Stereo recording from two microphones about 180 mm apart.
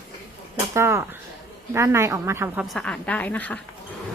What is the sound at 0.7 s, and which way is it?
A woman's voice, 15° right (ahead or behind).